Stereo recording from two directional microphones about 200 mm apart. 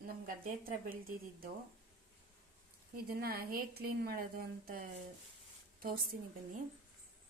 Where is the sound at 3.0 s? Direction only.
50° right (ahead or behind).